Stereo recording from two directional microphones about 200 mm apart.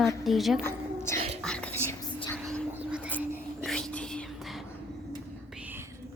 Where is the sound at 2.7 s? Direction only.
5° right (ahead or behind).